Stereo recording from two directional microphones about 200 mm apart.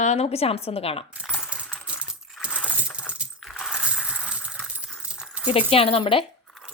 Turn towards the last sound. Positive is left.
turn(degrees=25)  # may be behind; listen again after turning